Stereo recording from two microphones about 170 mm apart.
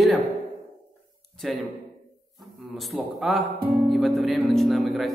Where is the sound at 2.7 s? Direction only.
Centre (ahead or behind).